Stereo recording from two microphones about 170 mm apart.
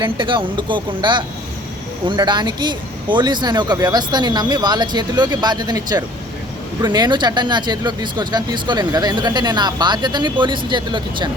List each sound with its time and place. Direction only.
0.0 s speech: 30° right (ahead or behind)